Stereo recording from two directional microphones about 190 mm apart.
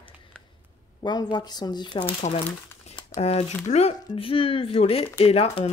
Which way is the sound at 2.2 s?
40° left (ahead or behind).